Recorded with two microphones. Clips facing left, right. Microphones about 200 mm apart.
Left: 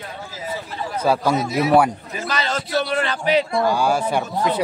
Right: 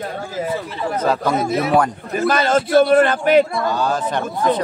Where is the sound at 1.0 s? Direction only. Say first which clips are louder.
Left 1 dB; 10° left (ahead or behind).